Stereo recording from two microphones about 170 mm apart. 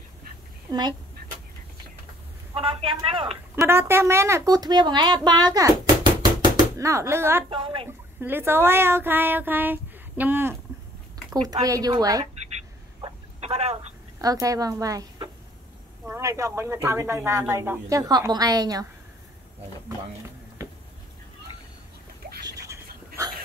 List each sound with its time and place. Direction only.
0.7 s speech: 25° right (ahead or behind)
2.5 s a man's voice: 30° right (ahead or behind)
3.6 s speech: 15° right (ahead or behind)
7.4 s a sound: 30° right (ahead or behind)
8.2 s speech: 15° right (ahead or behind)
11.6 s speech: 20° right (ahead or behind)
13.4 s telephone: 40° right (ahead or behind)
14.2 s speech: 20° right (ahead or behind)
22.4 s a sound: 20° right (ahead or behind)